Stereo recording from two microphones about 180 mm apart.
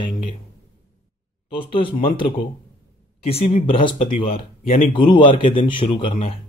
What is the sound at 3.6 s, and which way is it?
Speech, 30° left (ahead or behind).